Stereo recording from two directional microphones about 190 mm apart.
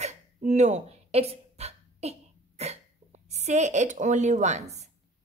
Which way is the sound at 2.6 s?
35° right (ahead or behind).